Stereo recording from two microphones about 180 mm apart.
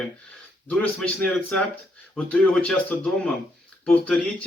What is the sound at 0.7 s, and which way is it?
Speech, 5° left (ahead or behind).